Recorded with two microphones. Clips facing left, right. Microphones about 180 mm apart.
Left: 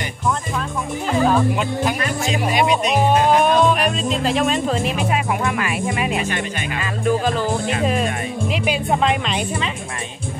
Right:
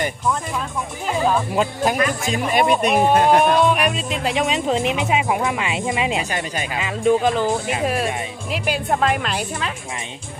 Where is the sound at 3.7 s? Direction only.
10° right (ahead or behind).